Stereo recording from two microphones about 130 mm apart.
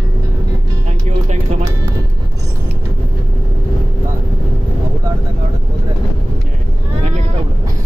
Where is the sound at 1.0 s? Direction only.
60° right (ahead or behind).